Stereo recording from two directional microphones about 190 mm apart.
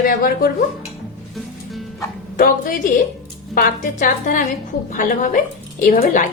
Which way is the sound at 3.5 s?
45° left (ahead or behind).